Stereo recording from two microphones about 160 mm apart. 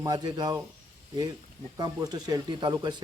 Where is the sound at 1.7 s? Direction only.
20° right (ahead or behind).